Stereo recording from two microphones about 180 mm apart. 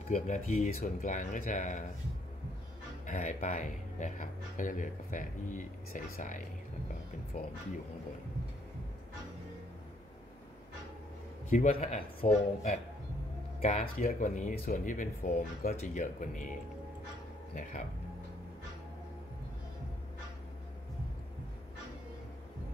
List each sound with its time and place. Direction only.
0.1 s speech: 45° left (ahead or behind)
3.1 s speech: 45° left (ahead or behind)
11.5 s a man's voice: 40° left (ahead or behind)
12.2 s speech: 55° left (ahead or behind)
13.6 s speech: 40° left (ahead or behind)
13.9 s speech: 50° left (ahead or behind)